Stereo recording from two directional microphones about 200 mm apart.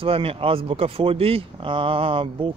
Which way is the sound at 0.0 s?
30° right (ahead or behind).